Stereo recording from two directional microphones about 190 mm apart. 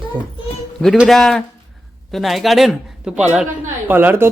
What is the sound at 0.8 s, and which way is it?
Speech, centre (ahead or behind).